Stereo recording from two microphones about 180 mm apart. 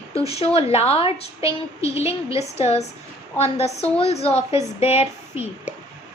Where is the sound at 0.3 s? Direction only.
35° left (ahead or behind).